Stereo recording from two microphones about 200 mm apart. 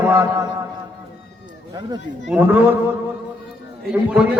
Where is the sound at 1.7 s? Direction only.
20° right (ahead or behind).